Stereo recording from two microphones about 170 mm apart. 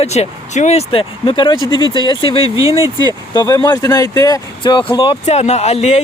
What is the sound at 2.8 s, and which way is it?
Speech, 25° right (ahead or behind).